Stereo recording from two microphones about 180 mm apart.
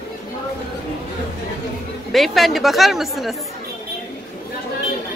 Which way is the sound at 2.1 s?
Centre (ahead or behind).